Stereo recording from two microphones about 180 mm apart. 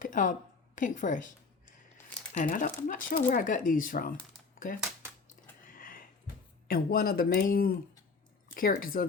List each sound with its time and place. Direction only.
0.0 s a woman's voice: 45° left (ahead or behind)
5.6 s a sound: 50° left (ahead or behind)
6.7 s speech: 55° left (ahead or behind)